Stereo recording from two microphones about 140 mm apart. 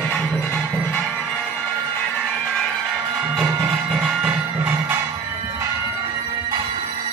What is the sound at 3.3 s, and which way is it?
Music, 5° right (ahead or behind).